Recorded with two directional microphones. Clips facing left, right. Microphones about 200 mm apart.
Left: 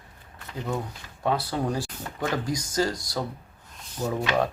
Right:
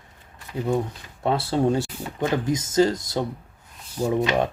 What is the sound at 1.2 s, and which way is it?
Speech, 25° right (ahead or behind).